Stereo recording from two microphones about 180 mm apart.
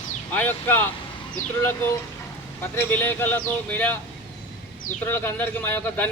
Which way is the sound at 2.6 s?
10° left (ahead or behind).